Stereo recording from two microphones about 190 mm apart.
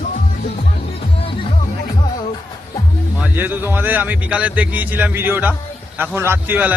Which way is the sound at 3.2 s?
10° right (ahead or behind).